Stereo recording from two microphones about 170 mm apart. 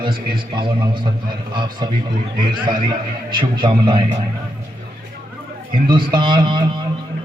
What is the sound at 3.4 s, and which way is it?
Speech, 30° right (ahead or behind).